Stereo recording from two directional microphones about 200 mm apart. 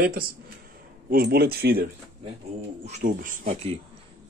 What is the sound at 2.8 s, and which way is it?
Speech, 40° right (ahead or behind).